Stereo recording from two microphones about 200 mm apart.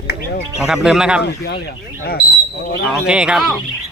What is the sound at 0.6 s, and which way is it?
Speech, centre (ahead or behind).